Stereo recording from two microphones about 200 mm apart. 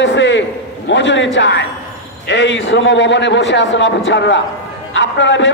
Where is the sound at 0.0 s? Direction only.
65° left (ahead or behind).